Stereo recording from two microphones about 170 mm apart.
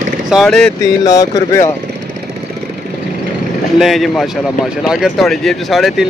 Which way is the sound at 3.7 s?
Centre (ahead or behind).